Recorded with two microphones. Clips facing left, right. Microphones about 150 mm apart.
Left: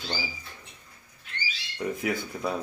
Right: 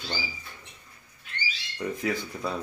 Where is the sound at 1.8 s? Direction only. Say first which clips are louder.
Even; 10° left (ahead or behind).